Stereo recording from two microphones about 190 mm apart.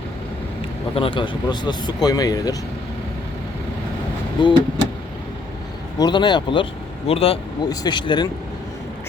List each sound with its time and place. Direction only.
0.9 s speech: 25° left (ahead or behind)
4.4 s vehicle: 25° left (ahead or behind)
6.0 s speech: 25° left (ahead or behind)